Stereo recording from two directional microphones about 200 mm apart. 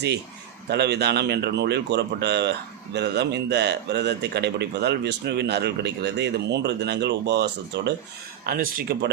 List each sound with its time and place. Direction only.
0.7 s speech: 55° right (ahead or behind)
8.4 s speech: 45° right (ahead or behind)